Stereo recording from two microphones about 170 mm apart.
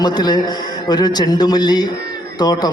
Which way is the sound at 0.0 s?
25° left (ahead or behind).